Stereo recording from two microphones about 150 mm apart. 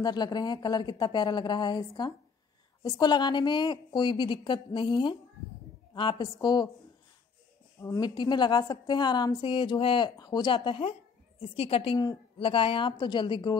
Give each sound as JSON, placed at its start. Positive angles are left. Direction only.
{"t": 0.0, "sound": "a woman's voice", "side_deg": 30}
{"t": 7.8, "sound": "a woman's voice", "side_deg": 25}